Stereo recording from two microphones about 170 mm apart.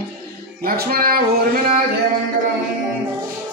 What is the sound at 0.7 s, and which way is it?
Music, 60° right (ahead or behind).